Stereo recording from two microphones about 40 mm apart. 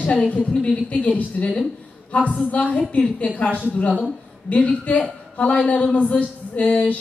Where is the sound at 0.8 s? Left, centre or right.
Left.